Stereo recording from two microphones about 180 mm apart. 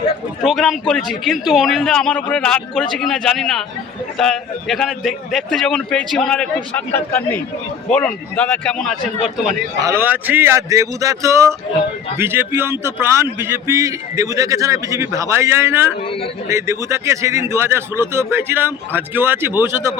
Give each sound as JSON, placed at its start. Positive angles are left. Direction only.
{"t": 0.4, "sound": "a man's voice", "side_deg": 0}
{"t": 9.8, "sound": "speech", "side_deg": -10}